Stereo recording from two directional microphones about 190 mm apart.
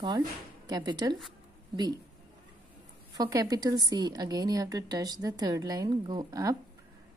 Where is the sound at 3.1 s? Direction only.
20° right (ahead or behind).